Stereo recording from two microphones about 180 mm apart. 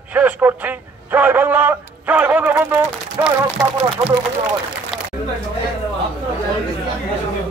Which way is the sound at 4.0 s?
20° right (ahead or behind).